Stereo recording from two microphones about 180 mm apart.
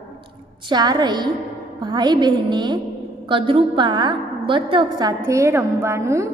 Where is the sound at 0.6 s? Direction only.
25° right (ahead or behind).